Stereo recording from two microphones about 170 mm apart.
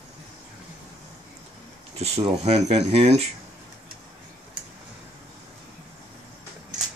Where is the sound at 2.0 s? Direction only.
40° right (ahead or behind).